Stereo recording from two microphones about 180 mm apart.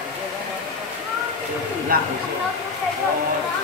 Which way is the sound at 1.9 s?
55° right (ahead or behind).